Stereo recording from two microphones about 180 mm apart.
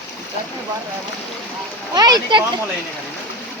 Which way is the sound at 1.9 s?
20° right (ahead or behind).